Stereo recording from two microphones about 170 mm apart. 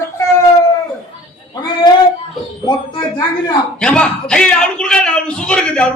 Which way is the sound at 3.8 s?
5° left (ahead or behind).